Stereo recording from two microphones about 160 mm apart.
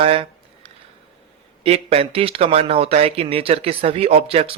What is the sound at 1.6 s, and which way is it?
Speech, 40° right (ahead or behind).